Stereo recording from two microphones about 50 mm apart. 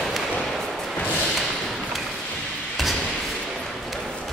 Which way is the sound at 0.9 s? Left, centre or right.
Left.